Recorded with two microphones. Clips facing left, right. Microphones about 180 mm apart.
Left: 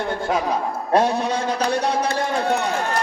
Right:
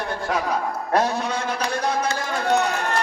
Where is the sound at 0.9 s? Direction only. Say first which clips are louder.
Left 3 dB; 30° left (ahead or behind).